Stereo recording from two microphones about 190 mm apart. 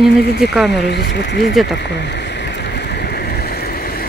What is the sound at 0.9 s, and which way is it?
Speech, 65° left (ahead or behind).